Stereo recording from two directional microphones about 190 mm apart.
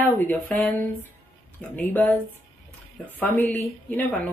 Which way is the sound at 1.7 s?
10° left (ahead or behind).